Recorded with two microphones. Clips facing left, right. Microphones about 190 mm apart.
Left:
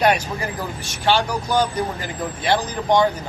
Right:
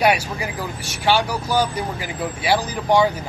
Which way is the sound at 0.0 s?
10° right (ahead or behind).